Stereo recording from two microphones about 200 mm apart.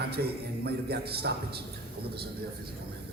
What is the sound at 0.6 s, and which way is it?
Speech, 50° right (ahead or behind).